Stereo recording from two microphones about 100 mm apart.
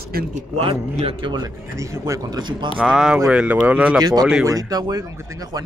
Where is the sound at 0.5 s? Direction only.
65° right (ahead or behind).